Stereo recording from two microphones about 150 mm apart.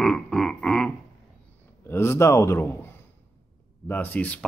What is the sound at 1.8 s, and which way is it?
Speech, 15° left (ahead or behind).